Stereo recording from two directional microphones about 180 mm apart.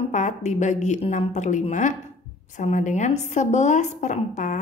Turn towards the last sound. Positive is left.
turn(degrees=40)  # may be behind; listen again after turning